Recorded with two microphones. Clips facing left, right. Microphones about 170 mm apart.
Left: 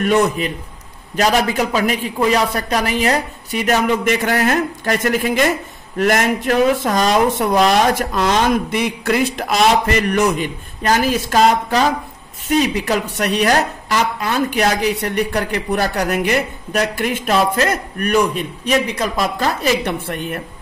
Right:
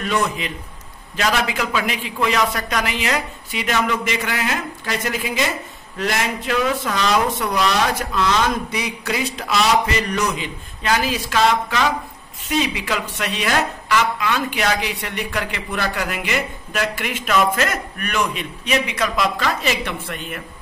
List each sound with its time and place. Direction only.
0.0 s a woman's voice: 45° left (ahead or behind)